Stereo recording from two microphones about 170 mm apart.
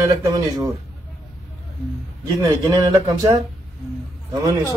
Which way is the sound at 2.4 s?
20° right (ahead or behind).